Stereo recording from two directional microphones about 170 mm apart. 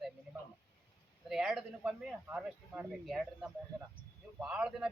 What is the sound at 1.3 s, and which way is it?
A woman's voice, 5° right (ahead or behind).